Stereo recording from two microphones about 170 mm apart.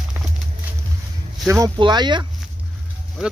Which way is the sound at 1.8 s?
25° right (ahead or behind).